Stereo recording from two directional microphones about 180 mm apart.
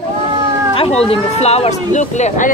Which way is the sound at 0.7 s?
30° left (ahead or behind).